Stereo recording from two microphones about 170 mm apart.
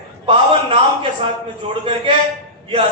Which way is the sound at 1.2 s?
30° right (ahead or behind).